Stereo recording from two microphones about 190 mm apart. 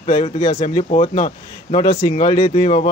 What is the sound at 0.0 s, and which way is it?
A man's voice, 35° left (ahead or behind).